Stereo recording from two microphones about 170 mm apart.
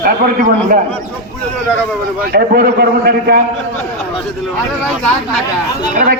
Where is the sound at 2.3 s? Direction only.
70° right (ahead or behind).